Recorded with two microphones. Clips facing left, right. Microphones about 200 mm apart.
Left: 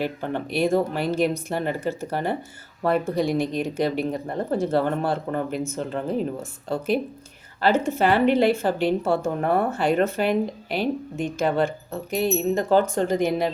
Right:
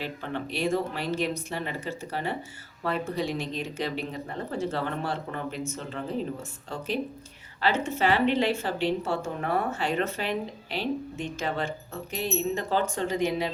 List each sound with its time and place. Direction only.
0.0 s a woman's voice: 50° left (ahead or behind)
7.6 s a woman's voice: 50° left (ahead or behind)